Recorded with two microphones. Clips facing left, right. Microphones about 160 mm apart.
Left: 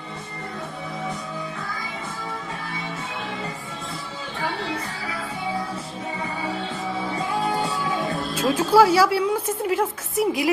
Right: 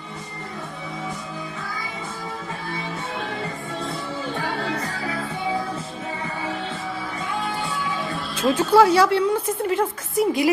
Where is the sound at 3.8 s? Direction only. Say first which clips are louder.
Right 7 dB; 50° right (ahead or behind).